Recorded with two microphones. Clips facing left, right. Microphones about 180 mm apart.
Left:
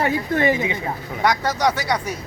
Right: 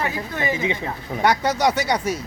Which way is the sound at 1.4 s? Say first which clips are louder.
Right 1 dB; 20° right (ahead or behind).